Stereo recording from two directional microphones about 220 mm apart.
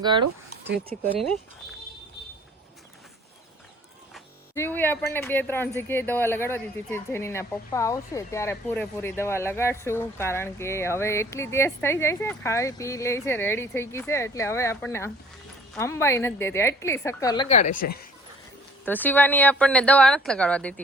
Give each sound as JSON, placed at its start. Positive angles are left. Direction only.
{"t": 0.0, "sound": "speech", "side_deg": -20}
{"t": 1.0, "sound": "speech", "side_deg": 5}
{"t": 4.5, "sound": "speech", "side_deg": 10}
{"t": 17.5, "sound": "a woman's voice", "side_deg": 35}
{"t": 18.9, "sound": "speech", "side_deg": 10}